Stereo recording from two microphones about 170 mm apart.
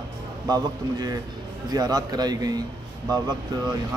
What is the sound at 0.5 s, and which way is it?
Speech, 20° right (ahead or behind).